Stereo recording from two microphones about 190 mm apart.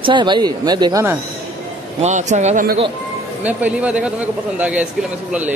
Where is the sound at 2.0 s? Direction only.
40° right (ahead or behind).